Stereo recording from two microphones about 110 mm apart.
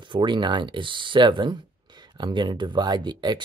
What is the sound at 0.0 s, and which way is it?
Speech, 45° right (ahead or behind).